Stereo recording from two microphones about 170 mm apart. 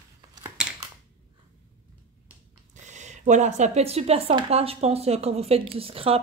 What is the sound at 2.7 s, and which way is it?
Speech, 45° right (ahead or behind).